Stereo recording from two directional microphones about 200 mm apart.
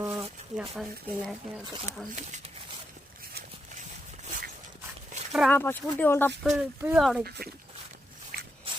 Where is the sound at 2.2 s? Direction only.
35° right (ahead or behind).